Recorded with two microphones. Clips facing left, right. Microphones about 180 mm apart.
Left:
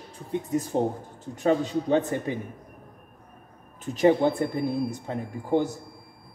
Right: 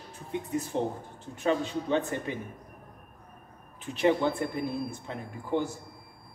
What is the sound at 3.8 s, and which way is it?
Speech, 45° left (ahead or behind).